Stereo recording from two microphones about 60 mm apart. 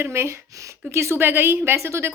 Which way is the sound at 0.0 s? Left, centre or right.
Right.